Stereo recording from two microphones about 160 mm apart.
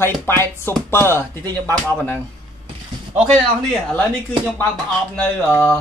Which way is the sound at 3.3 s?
5° left (ahead or behind).